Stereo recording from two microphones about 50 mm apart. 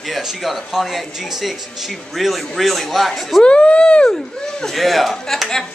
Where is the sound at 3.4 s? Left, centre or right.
Left.